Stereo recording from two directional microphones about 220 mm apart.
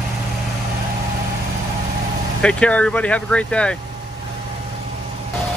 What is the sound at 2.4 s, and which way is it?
Speech, 5° left (ahead or behind).